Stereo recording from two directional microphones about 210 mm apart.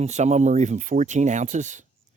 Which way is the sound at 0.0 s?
35° right (ahead or behind).